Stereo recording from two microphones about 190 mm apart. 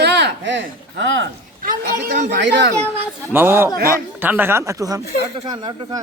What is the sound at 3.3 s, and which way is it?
Speech, 10° right (ahead or behind).